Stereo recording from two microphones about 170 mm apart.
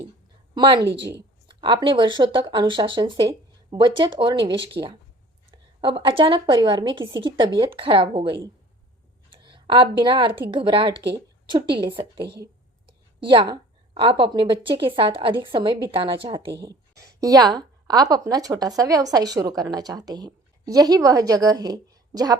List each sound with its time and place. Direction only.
0.5 s a woman's voice: 25° right (ahead or behind)
0.9 s a woman's voice: 90° right
1.5 s a woman's voice: 30° right (ahead or behind)
5.8 s a woman's voice: 30° right (ahead or behind)
12.2 s a woman's voice: 75° right (ahead or behind)
13.1 s a woman's voice: 30° right (ahead or behind)
16.6 s a woman's voice: 20° right (ahead or behind)